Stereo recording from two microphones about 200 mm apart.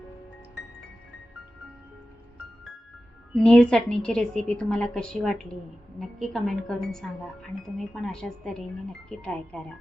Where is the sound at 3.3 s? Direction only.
5° left (ahead or behind).